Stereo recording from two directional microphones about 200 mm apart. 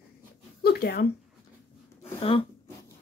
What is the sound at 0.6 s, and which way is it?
Speech, 50° left (ahead or behind).